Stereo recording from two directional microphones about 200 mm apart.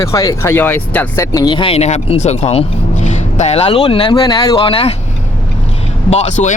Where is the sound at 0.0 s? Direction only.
15° left (ahead or behind).